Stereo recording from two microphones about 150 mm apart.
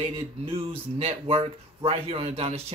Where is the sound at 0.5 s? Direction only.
40° right (ahead or behind).